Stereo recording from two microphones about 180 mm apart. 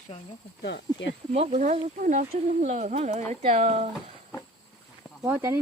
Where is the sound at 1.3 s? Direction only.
40° right (ahead or behind).